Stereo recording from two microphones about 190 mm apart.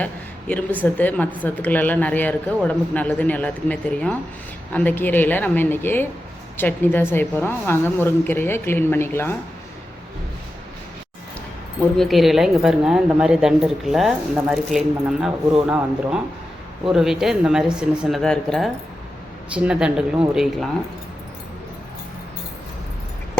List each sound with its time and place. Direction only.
0.0 s a woman's voice: 10° left (ahead or behind)
11.9 s a woman's voice: centre (ahead or behind)